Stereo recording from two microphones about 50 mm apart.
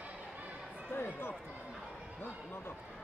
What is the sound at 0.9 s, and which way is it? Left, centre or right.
Run, left.